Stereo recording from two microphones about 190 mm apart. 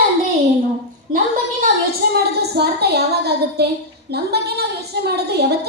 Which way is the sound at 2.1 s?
60° right (ahead or behind).